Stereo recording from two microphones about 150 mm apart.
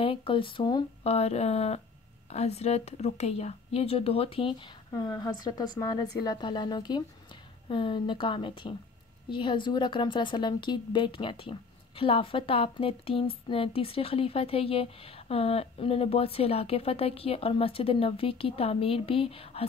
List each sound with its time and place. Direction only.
0.0 s speech: 35° left (ahead or behind)
1.0 s a woman's voice: 45° left (ahead or behind)
4.9 s a woman's voice: 25° left (ahead or behind)